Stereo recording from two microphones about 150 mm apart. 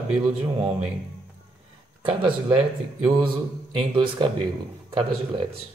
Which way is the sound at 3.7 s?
35° right (ahead or behind).